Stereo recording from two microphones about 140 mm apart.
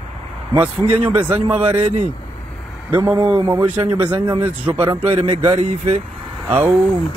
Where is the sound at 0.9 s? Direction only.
10° right (ahead or behind).